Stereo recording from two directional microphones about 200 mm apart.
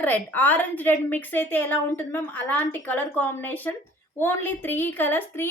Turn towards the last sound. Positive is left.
turn(degrees=10)  # may be behind; listen again after turning